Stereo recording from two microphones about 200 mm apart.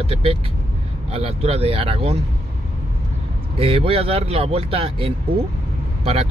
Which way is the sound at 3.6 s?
30° right (ahead or behind).